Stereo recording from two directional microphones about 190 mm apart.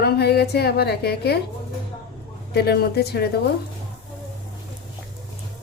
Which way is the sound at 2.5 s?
60° left (ahead or behind).